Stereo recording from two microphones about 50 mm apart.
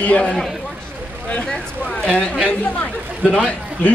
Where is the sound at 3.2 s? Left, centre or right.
Centre.